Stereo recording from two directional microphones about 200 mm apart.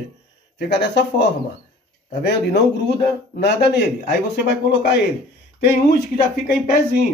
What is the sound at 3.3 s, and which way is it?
Speech, 55° left (ahead or behind).